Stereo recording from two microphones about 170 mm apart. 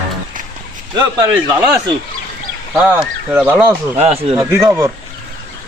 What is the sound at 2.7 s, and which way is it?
Speech, 10° right (ahead or behind).